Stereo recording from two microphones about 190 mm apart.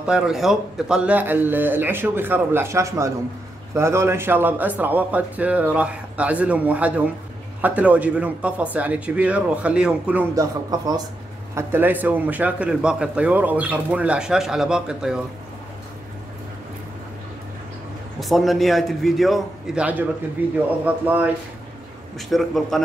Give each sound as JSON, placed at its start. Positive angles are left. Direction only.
{"t": 0.0, "sound": "a man's voice", "side_deg": -5}
{"t": 10.3, "sound": "a man's voice", "side_deg": -20}
{"t": 18.2, "sound": "a man's voice", "side_deg": 0}
{"t": 22.3, "sound": "a man's voice", "side_deg": 0}